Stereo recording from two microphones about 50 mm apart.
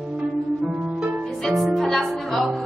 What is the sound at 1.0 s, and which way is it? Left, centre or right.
Harp, right.